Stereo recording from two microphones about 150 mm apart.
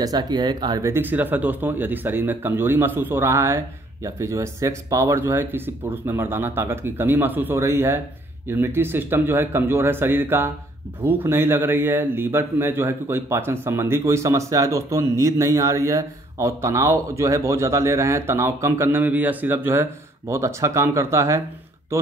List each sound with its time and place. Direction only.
0.0 s speech: 25° right (ahead or behind)